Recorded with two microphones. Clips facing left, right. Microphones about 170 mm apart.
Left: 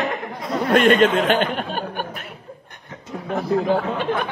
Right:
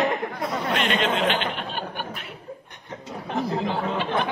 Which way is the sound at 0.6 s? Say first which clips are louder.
Left 11 dB; 50° left (ahead or behind).